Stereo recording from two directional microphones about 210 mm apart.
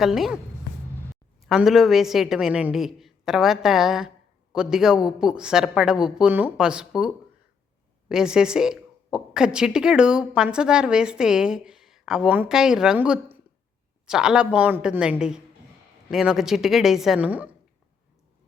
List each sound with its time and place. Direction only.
0.0 s a woman's voice: centre (ahead or behind)
8.1 s a woman's voice: 5° right (ahead or behind)